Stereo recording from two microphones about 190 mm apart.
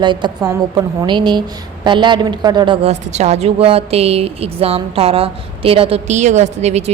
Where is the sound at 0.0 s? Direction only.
25° right (ahead or behind).